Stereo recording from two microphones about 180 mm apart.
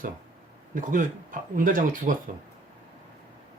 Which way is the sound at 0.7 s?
45° right (ahead or behind).